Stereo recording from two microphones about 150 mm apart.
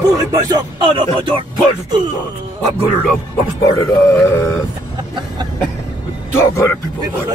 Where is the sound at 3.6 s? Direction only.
20° left (ahead or behind).